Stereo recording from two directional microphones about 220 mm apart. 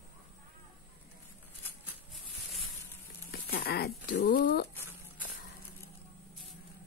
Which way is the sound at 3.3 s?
45° left (ahead or behind).